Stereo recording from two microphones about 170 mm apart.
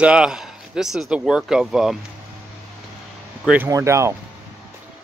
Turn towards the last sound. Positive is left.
turn(degrees=-15)  # may be behind; listen again after turning